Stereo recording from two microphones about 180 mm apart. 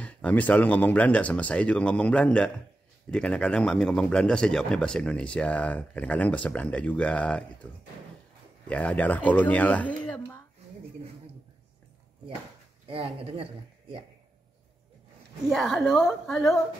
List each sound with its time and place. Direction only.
0.0 s speech: 10° left (ahead or behind)
12.8 s speech: 30° right (ahead or behind)
15.5 s speech: centre (ahead or behind)